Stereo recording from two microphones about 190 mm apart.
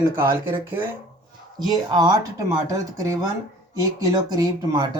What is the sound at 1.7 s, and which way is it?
Speech, 20° right (ahead or behind).